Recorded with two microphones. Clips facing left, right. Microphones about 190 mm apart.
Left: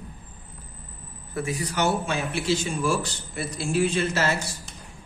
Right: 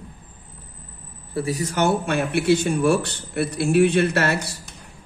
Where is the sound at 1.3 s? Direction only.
35° right (ahead or behind).